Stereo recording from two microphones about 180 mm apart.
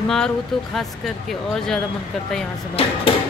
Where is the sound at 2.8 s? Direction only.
30° left (ahead or behind).